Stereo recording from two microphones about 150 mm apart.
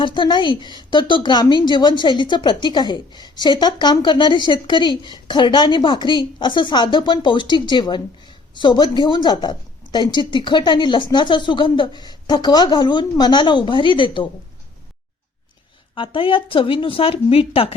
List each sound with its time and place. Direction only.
0.0 s a woman's voice: 30° left (ahead or behind)
16.0 s a woman's voice: 35° left (ahead or behind)